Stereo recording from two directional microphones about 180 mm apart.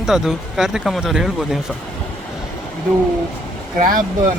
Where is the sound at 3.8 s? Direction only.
50° right (ahead or behind).